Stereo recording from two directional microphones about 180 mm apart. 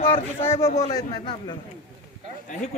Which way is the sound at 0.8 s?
20° left (ahead or behind).